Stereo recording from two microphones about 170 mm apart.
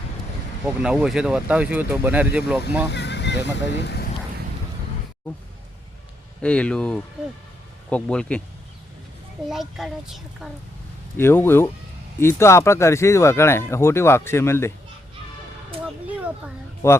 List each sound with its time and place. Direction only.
0.6 s speech: 5° right (ahead or behind)
2.9 s speech: 90° left; by 4.1 s 75° left (ahead or behind)
6.4 s speech: 5° left (ahead or behind)
9.5 s speech: centre (ahead or behind)
11.2 s speech: 10° left (ahead or behind)
16.0 s a sound: 10° right (ahead or behind)
16.8 s speech: 15° left (ahead or behind)